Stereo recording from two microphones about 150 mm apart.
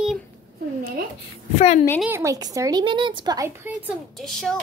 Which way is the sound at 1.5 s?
50° left (ahead or behind).